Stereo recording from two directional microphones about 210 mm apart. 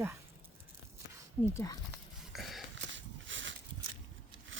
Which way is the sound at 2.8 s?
60° right (ahead or behind).